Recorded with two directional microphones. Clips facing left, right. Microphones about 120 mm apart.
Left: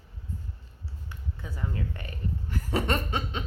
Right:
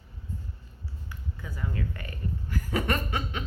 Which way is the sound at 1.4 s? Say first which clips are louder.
Even; 25° left (ahead or behind).